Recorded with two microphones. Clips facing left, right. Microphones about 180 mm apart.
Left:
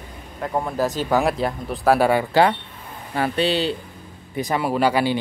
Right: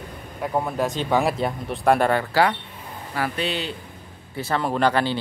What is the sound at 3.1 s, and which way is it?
Speech, 30° left (ahead or behind).